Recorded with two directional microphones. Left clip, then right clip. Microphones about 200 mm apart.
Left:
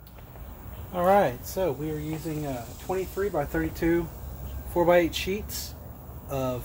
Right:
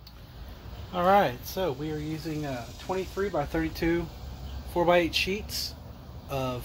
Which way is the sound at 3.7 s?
10° right (ahead or behind).